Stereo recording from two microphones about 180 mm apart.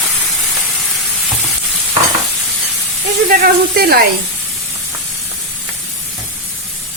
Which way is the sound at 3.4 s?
60° right (ahead or behind).